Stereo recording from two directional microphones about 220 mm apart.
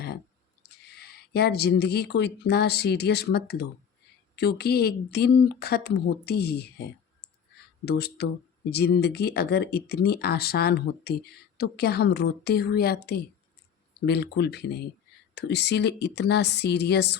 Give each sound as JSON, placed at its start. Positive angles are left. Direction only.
{"t": 0.9, "sound": "speech", "side_deg": 45}